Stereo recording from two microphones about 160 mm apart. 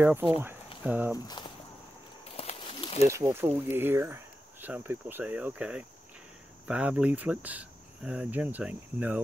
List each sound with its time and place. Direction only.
0.0 s speech: 10° right (ahead or behind)
2.3 s a sound: 35° left (ahead or behind)
3.1 s speech: 15° right (ahead or behind)